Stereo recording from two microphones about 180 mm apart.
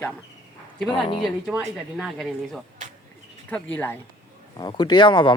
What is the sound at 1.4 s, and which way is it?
A woman's voice, 5° right (ahead or behind).